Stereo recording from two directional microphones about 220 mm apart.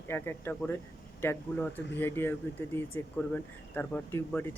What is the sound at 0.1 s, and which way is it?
Speech, 10° left (ahead or behind).